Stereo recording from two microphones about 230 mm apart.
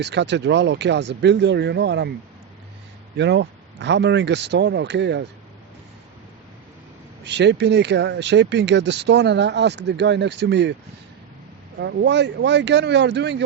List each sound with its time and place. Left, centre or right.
0.0 s speech: right
3.2 s speech: right
7.3 s speech: right
11.8 s speech: right